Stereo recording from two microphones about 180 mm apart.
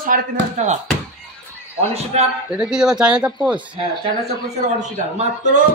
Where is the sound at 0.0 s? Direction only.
45° right (ahead or behind).